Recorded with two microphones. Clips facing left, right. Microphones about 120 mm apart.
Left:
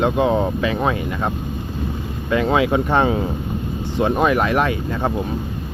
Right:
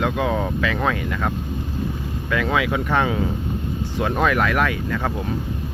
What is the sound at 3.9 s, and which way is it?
Speech, 20° left (ahead or behind).